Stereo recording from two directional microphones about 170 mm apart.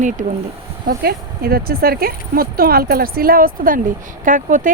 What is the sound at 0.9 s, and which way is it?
Speech, 65° right (ahead or behind).